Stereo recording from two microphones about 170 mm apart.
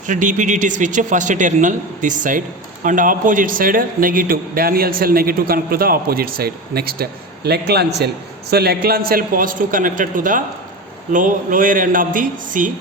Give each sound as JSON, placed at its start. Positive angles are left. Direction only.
{"t": 0.1, "sound": "a man's voice", "side_deg": -50}